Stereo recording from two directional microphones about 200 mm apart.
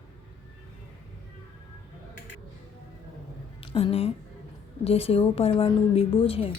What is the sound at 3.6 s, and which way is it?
A woman's voice, 25° left (ahead or behind).